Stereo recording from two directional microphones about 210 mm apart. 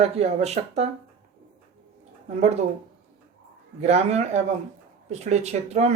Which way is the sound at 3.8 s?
30° right (ahead or behind).